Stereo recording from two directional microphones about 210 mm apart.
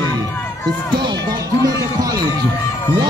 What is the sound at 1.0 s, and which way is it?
Music, 20° right (ahead or behind).